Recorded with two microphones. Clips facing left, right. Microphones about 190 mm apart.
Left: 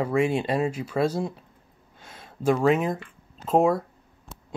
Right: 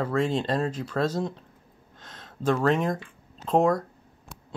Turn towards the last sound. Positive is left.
turn(degrees=5)  # may be behind; listen again after turning